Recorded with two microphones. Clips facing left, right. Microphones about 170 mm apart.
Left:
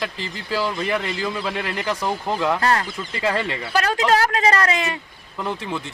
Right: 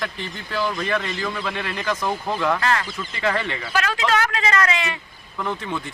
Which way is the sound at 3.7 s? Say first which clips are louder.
Left 3 dB; 35° left (ahead or behind).